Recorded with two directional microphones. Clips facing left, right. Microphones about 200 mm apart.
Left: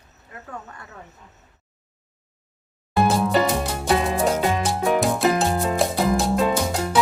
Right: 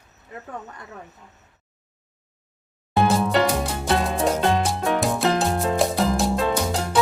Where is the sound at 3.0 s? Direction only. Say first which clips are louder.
Even; centre (ahead or behind).